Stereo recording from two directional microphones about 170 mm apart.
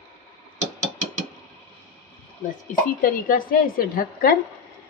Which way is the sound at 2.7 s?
55° left (ahead or behind).